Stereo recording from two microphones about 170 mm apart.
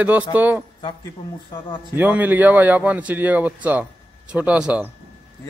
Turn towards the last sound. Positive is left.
turn(degrees=-5)  # may be behind; listen again after turning